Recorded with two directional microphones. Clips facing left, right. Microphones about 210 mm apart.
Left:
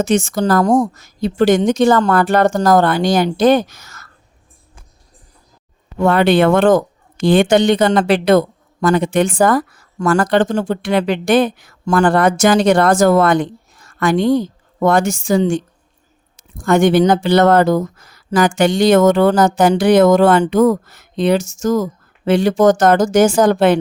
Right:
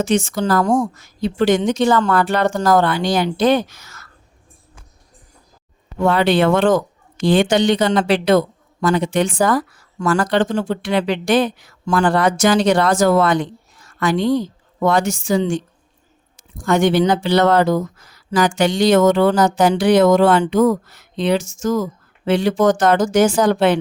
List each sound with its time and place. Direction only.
0.0 s speech: 45° left (ahead or behind)
6.0 s speech: 55° left (ahead or behind)
16.6 s speech: 50° left (ahead or behind)